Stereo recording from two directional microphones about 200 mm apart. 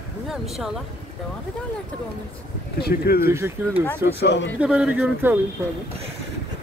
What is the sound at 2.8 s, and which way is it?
Speech, 50° left (ahead or behind).